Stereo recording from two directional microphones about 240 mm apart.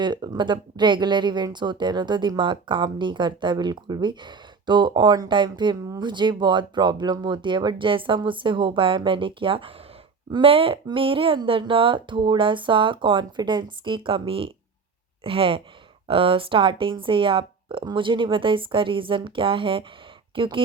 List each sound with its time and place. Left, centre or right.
0.0 s speech: centre